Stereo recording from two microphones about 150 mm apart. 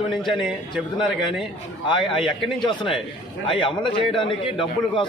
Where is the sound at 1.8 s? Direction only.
35° left (ahead or behind).